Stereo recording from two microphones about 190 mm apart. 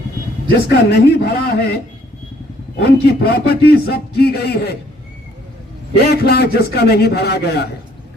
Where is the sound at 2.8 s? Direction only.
55° left (ahead or behind).